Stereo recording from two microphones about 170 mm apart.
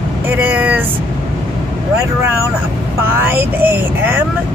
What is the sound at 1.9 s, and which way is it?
Speech, 15° right (ahead or behind).